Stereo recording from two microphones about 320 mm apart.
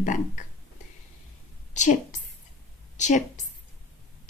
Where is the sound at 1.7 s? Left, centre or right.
Left.